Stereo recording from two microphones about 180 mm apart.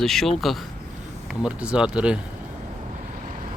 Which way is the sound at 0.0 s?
Centre (ahead or behind).